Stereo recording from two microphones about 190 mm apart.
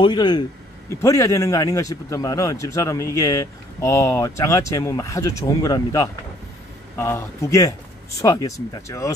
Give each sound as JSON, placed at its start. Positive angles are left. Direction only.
{"t": 0.0, "sound": "a man's voice", "side_deg": 20}